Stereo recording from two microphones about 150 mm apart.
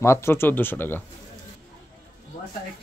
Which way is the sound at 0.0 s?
20° left (ahead or behind).